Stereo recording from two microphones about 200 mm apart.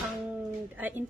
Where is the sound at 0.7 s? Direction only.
10° right (ahead or behind).